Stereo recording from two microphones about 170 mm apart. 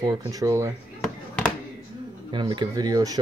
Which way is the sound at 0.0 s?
25° right (ahead or behind).